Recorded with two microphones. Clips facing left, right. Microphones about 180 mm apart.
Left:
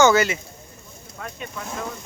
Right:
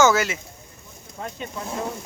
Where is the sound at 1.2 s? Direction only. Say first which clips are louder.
Right 2 dB; 25° right (ahead or behind).